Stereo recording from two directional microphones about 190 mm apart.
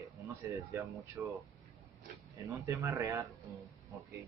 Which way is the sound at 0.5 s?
15° right (ahead or behind).